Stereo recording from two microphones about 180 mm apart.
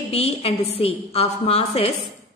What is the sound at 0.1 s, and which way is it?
A woman's voice, 35° left (ahead or behind).